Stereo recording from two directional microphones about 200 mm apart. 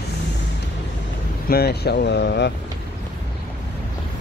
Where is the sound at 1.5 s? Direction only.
55° left (ahead or behind).